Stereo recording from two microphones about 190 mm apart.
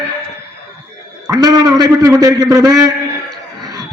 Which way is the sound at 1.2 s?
20° right (ahead or behind).